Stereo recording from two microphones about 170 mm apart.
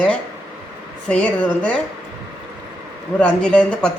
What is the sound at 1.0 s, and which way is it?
Speech, 5° left (ahead or behind).